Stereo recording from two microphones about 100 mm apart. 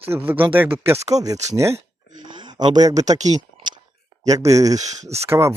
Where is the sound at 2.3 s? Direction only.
50° right (ahead or behind).